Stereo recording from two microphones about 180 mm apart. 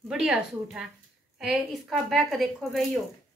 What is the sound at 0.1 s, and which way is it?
A woman's voice, 5° right (ahead or behind).